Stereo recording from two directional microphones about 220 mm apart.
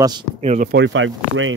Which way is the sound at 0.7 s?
55° right (ahead or behind).